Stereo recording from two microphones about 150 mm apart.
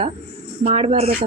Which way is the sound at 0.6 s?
40° right (ahead or behind).